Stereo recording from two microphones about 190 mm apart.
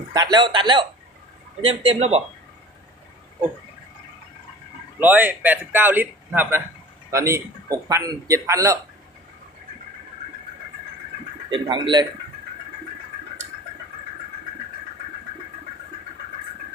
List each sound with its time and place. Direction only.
0.1 s a man's voice: 20° right (ahead or behind)
4.9 s a man's voice: 10° right (ahead or behind)
11.5 s speech: 25° right (ahead or behind)